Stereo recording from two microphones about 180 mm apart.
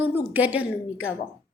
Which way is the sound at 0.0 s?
10° right (ahead or behind).